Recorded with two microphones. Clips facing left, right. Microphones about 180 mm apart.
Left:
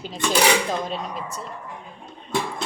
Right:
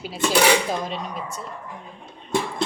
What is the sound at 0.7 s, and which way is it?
Speech, centre (ahead or behind).